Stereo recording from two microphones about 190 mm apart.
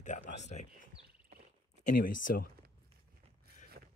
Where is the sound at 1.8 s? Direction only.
45° left (ahead or behind).